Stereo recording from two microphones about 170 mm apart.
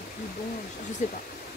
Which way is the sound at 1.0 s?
50° left (ahead or behind).